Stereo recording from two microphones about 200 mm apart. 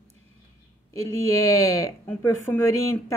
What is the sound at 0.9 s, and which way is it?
A woman's voice, 15° left (ahead or behind).